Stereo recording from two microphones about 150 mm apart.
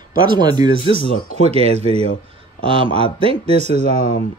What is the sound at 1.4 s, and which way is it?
Speech, 45° right (ahead or behind).